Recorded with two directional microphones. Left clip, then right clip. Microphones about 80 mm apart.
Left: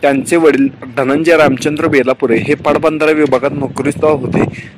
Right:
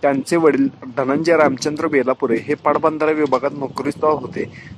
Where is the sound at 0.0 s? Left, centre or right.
Left.